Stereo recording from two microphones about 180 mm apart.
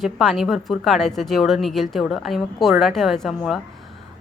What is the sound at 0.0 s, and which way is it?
Speech, centre (ahead or behind).